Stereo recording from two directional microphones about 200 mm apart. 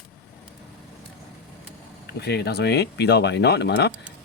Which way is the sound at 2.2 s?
55° left (ahead or behind).